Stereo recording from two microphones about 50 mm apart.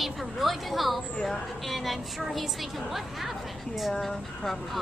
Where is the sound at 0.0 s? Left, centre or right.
Centre.